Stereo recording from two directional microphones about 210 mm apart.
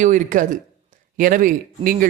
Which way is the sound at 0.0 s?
40° right (ahead or behind).